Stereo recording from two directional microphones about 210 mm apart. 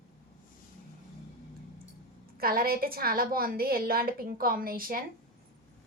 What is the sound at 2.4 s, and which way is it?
A woman's voice, 45° right (ahead or behind).